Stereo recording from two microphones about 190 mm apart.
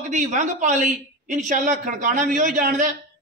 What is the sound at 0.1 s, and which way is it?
A man's voice, 40° right (ahead or behind).